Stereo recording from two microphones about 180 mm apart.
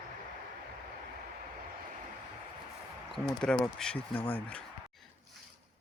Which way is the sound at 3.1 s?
5° left (ahead or behind).